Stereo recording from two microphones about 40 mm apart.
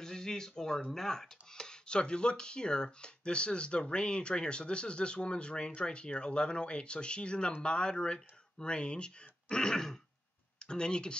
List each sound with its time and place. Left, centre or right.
0.0 s speech: centre